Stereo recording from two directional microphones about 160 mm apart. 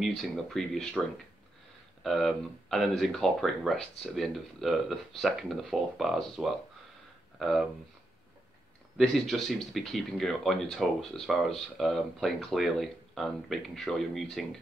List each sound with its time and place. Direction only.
0.0 s speech: centre (ahead or behind)
8.9 s speech: centre (ahead or behind)